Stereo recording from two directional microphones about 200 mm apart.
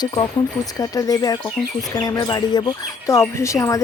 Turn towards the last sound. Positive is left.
turn(degrees=15)  # may be behind; listen again after turning